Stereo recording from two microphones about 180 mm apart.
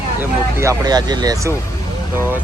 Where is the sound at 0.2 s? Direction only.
15° right (ahead or behind).